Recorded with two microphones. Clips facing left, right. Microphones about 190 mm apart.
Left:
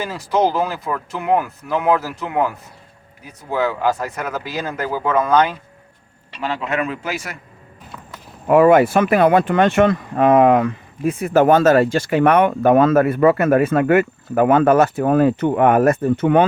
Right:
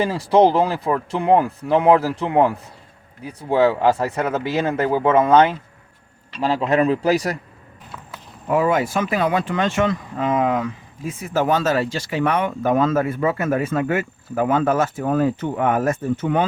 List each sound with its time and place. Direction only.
0.0 s speech: 30° right (ahead or behind)
8.4 s speech: 65° left (ahead or behind)